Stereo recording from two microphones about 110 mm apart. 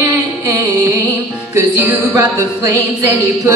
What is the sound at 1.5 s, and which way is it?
A woman's voice, 25° right (ahead or behind).